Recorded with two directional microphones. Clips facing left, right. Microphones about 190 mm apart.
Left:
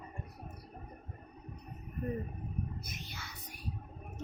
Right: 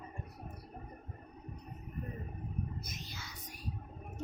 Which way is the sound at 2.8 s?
60° left (ahead or behind).